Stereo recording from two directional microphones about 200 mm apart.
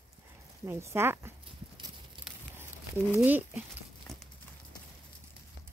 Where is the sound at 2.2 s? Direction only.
10° right (ahead or behind).